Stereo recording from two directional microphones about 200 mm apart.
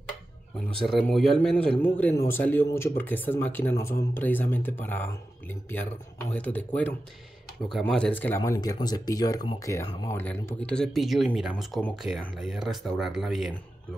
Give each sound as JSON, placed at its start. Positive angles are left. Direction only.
{"t": 0.7, "sound": "speech", "side_deg": 0}
{"t": 6.3, "sound": "speech", "side_deg": 5}
{"t": 8.5, "sound": "speech", "side_deg": 20}